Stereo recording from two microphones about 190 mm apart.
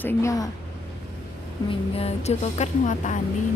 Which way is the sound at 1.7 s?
30° left (ahead or behind).